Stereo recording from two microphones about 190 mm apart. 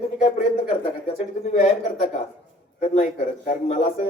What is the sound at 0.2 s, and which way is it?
Speech, 35° left (ahead or behind).